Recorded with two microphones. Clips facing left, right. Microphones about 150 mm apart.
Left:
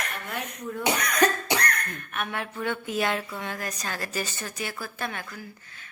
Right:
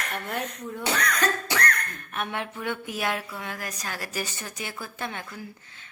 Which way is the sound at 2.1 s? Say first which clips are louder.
Right 1 dB; 25° right (ahead or behind).